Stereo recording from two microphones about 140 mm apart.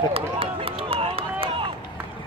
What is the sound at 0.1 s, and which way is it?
Run, 40° right (ahead or behind).